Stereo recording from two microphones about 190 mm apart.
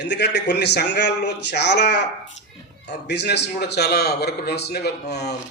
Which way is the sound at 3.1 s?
65° left (ahead or behind).